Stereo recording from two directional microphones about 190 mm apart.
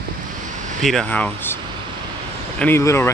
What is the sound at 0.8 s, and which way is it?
Speech, 5° left (ahead or behind).